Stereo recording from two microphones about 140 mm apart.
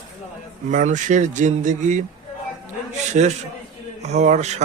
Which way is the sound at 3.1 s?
55° right (ahead or behind).